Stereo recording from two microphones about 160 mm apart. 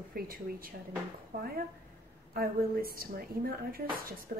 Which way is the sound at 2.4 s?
70° right (ahead or behind).